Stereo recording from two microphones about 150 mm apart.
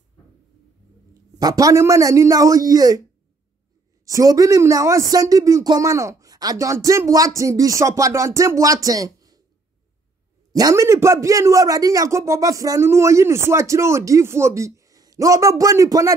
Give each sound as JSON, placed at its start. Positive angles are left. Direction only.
{"t": 1.4, "sound": "a man's voice", "side_deg": -25}
{"t": 4.0, "sound": "a man's voice", "side_deg": -20}
{"t": 10.5, "sound": "a man's voice", "side_deg": -25}